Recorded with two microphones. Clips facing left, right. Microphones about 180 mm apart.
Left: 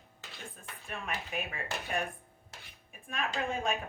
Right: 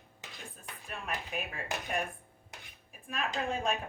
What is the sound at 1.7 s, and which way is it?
Speech, 15° right (ahead or behind).